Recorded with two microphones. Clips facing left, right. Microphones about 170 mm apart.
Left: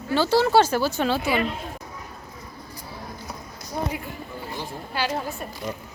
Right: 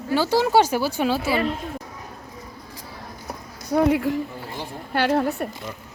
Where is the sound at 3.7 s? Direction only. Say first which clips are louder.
Right 11 dB; 70° right (ahead or behind).